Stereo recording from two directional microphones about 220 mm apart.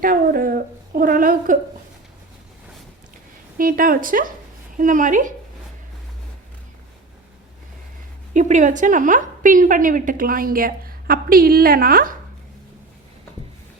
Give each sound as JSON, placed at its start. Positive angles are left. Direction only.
{"t": 0.0, "sound": "a woman's voice", "side_deg": -40}
{"t": 3.6, "sound": "a woman's voice", "side_deg": -40}
{"t": 8.3, "sound": "a woman's voice", "side_deg": -35}